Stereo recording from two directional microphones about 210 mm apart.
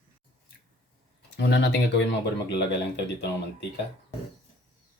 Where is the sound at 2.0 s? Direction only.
55° left (ahead or behind).